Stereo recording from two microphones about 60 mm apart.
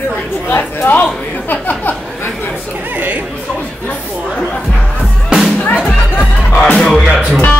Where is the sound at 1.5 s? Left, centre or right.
Left.